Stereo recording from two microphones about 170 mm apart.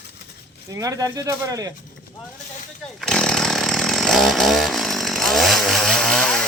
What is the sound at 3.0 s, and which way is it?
Chainsaw, 5° left (ahead or behind).